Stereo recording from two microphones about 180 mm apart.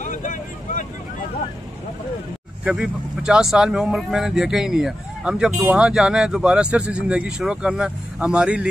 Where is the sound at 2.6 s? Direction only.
5° right (ahead or behind).